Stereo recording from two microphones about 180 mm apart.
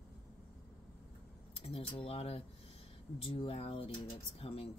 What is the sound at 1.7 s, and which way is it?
Speech, 30° left (ahead or behind).